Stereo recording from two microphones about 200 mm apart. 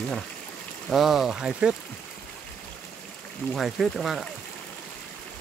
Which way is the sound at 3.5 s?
Centre (ahead or behind).